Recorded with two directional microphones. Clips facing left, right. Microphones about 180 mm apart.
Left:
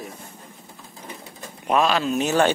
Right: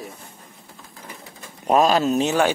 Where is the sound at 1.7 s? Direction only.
40° right (ahead or behind).